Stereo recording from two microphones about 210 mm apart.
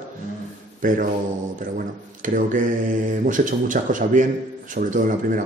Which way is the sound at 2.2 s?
40° right (ahead or behind).